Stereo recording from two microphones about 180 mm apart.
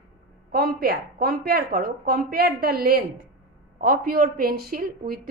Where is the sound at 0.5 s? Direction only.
55° right (ahead or behind).